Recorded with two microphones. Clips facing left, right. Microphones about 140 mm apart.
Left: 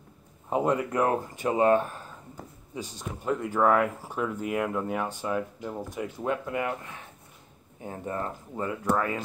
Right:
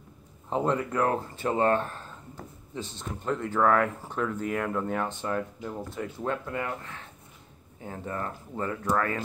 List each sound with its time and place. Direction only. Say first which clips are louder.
0.5 s speech: left 1 dB; 10° left (ahead or behind)